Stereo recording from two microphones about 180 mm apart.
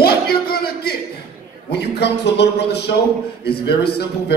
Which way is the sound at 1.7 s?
65° left (ahead or behind).